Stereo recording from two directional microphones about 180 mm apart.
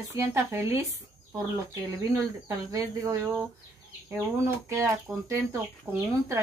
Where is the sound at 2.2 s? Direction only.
15° right (ahead or behind).